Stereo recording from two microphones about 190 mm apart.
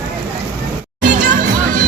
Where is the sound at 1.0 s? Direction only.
40° right (ahead or behind).